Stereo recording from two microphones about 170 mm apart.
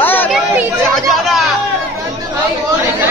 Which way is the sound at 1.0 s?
Centre (ahead or behind).